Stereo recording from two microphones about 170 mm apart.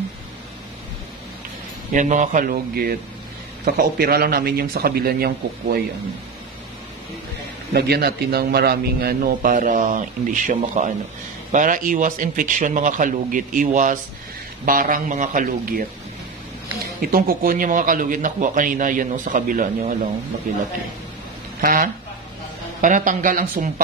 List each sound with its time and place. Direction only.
2.0 s a man's voice: 45° right (ahead or behind); by 5.8 s 65° right (ahead or behind)
7.7 s a man's voice: 70° right (ahead or behind); by 15.8 s 55° right (ahead or behind)
17.0 s a man's voice: 60° right (ahead or behind)